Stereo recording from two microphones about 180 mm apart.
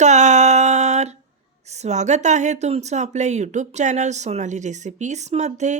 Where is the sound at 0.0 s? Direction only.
40° right (ahead or behind).